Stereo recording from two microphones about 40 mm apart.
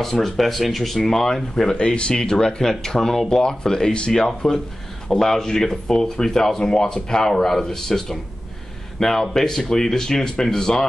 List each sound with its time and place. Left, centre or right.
0.0 s speech: centre
1.9 s speech: left